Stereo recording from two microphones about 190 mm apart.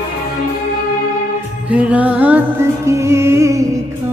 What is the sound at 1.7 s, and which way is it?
Music, 5° right (ahead or behind).